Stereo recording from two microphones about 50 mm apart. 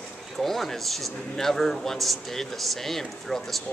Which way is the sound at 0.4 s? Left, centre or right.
Centre.